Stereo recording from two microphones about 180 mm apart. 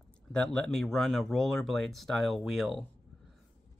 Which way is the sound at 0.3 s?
5° left (ahead or behind).